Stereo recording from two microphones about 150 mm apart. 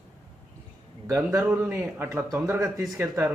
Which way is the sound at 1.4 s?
15° right (ahead or behind).